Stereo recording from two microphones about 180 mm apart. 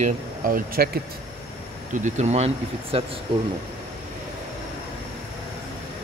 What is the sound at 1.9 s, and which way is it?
Speech, 40° right (ahead or behind).